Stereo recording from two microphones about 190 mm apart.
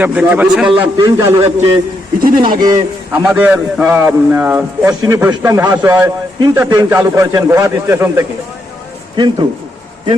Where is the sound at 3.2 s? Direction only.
10° right (ahead or behind).